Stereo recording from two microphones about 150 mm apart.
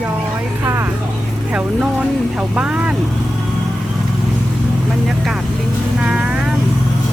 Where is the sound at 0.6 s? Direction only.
15° right (ahead or behind).